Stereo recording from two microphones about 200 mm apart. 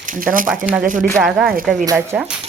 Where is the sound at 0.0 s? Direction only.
40° right (ahead or behind).